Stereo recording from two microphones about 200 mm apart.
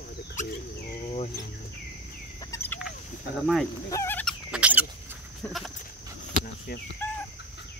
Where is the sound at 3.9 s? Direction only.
10° left (ahead or behind).